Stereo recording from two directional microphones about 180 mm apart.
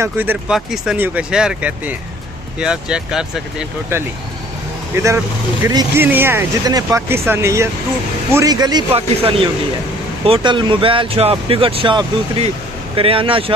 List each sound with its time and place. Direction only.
0.0 s speech: 10° right (ahead or behind)
6.0 s speech: 10° right (ahead or behind); by 13.5 s 30° right (ahead or behind)